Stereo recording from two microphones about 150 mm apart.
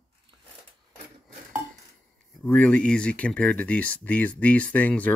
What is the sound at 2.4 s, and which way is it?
Speech, 10° left (ahead or behind).